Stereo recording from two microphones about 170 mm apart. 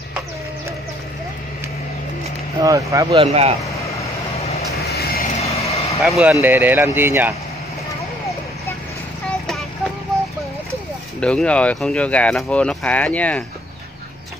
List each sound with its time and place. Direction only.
2.6 s speech: 20° right (ahead or behind)
3.2 s speech: 35° right (ahead or behind)
3.6 s vehicle: 20° left (ahead or behind)
4.4 s vehicle: 35° left (ahead or behind)
4.7 s vehicle: 65° left (ahead or behind)
5.4 s vehicle: 35° left (ahead or behind)
6.0 s speech: centre (ahead or behind)
11.1 s speech: 5° left (ahead or behind)